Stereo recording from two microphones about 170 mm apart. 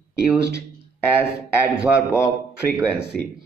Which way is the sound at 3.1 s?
60° right (ahead or behind).